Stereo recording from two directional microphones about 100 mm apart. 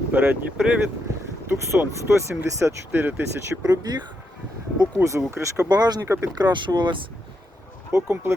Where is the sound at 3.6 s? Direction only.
40° right (ahead or behind).